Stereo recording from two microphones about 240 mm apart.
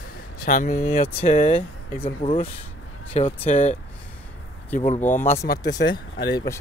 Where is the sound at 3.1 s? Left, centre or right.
Left.